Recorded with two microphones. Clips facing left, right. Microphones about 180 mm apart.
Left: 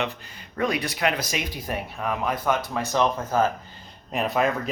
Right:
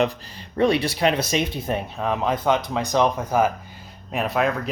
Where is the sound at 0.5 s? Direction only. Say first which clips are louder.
Right 6 dB; 30° right (ahead or behind); by 3.5 s 15° right (ahead or behind).